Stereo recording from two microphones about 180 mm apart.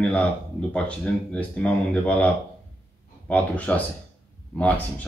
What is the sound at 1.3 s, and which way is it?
Speech, 5° left (ahead or behind).